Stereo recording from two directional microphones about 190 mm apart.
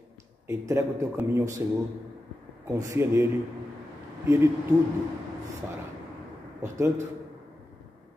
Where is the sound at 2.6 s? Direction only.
15° right (ahead or behind).